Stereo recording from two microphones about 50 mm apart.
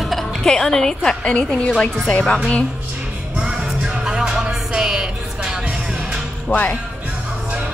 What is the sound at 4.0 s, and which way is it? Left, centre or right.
Music, centre.